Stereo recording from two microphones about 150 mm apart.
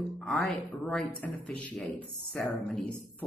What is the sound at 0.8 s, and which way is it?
A man's voice, 5° left (ahead or behind).